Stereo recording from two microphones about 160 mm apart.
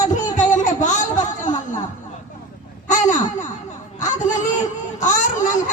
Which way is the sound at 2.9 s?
50° left (ahead or behind).